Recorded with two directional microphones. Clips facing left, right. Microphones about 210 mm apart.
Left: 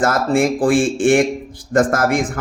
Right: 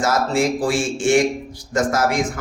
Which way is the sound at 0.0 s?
55° left (ahead or behind).